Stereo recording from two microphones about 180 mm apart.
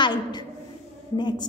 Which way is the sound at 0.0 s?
25° left (ahead or behind).